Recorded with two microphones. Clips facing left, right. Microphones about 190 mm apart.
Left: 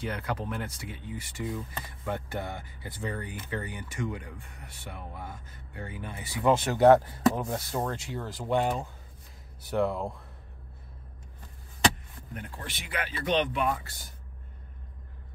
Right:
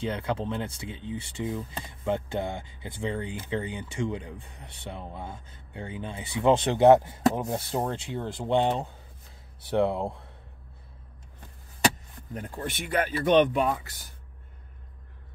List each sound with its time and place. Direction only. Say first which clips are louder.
0.0 s speech: right 4 dB; 25° right (ahead or behind)
12.4 s speech: right 7 dB; 50° right (ahead or behind)